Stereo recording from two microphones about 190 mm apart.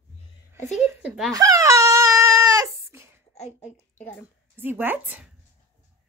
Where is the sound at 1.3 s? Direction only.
20° right (ahead or behind).